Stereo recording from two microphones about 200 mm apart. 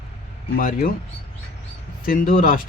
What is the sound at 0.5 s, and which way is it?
Speech, 45° left (ahead or behind).